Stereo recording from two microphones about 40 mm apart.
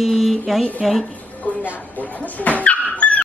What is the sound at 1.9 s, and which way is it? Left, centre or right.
Dog, left.